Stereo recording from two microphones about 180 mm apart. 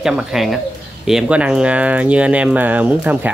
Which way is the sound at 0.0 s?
5° right (ahead or behind).